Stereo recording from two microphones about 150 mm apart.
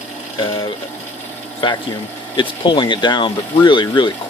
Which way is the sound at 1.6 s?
35° left (ahead or behind).